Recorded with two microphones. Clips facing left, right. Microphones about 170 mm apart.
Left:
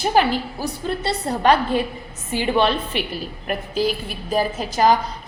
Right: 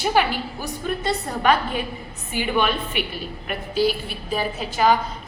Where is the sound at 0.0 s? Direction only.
35° left (ahead or behind).